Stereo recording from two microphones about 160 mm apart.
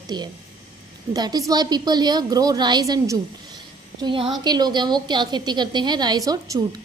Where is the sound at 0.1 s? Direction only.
25° right (ahead or behind).